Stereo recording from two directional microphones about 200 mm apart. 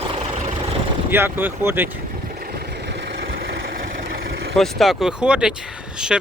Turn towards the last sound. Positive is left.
turn(degrees=-5)  # may be behind; listen again after turning